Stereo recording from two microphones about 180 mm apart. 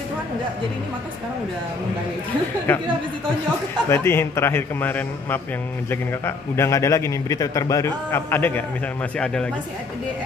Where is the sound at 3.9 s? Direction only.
15° left (ahead or behind).